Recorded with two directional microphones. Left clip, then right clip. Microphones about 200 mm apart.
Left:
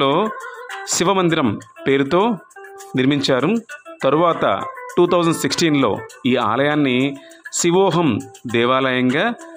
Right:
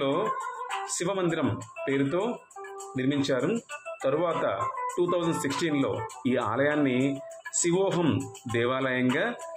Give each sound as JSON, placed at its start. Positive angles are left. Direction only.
{"t": 0.0, "sound": "music", "side_deg": 40}
{"t": 1.9, "sound": "speech", "side_deg": 40}